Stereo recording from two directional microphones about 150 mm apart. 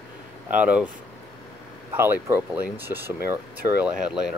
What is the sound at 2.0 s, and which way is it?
Speech, 15° right (ahead or behind).